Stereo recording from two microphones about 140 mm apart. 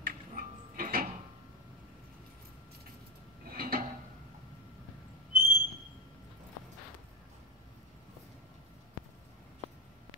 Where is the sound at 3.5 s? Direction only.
90° right.